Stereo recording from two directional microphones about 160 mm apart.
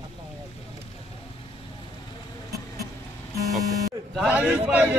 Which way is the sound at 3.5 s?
Centre (ahead or behind).